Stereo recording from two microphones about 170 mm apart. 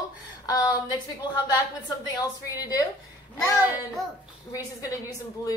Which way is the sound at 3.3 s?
20° left (ahead or behind).